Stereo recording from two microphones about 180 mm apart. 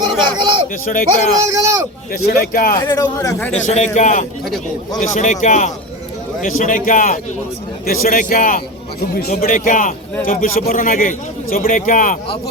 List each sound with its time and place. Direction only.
0.3 s a sound: 25° right (ahead or behind)
0.9 s a man's voice: 50° left (ahead or behind)
1.4 s speech: 15° right (ahead or behind)
2.1 s a man's voice: 55° left (ahead or behind)
2.7 s speech: 20° left (ahead or behind)
3.5 s a man's voice: 40° left (ahead or behind)